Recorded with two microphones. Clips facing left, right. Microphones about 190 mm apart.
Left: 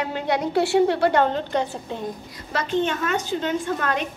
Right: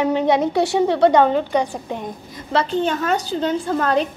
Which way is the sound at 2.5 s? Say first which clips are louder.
Right 4 dB; 35° right (ahead or behind).